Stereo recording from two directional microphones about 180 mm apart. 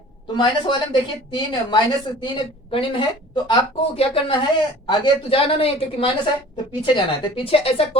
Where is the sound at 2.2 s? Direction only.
30° left (ahead or behind).